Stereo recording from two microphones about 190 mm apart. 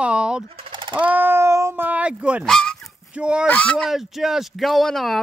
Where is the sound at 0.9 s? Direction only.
10° right (ahead or behind).